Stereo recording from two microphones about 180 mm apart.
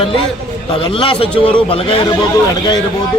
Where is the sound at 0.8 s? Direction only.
30° left (ahead or behind).